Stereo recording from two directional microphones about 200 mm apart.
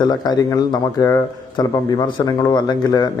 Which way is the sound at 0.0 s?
20° left (ahead or behind).